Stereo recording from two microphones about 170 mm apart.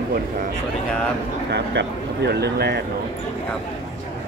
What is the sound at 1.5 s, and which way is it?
Speech, 90° right.